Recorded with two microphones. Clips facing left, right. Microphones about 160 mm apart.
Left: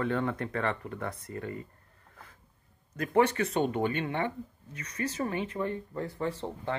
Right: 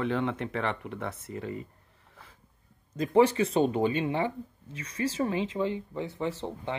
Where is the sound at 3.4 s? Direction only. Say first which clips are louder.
Right 3 dB; 20° right (ahead or behind).